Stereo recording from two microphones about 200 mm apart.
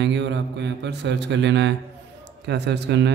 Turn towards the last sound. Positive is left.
turn(degrees=-60)  # may be behind; listen again after turning